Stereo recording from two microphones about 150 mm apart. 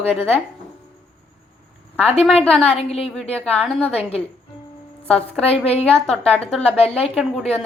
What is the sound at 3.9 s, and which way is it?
Speech, 40° left (ahead or behind).